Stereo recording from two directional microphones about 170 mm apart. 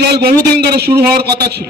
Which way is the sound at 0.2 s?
70° right (ahead or behind).